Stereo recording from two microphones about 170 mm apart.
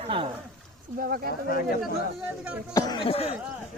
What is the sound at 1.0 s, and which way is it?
Speech, 60° right (ahead or behind).